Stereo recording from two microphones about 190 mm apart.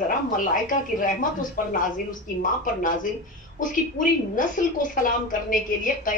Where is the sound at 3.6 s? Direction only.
45° left (ahead or behind).